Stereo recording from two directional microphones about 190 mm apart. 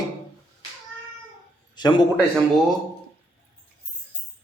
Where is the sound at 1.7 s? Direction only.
25° left (ahead or behind).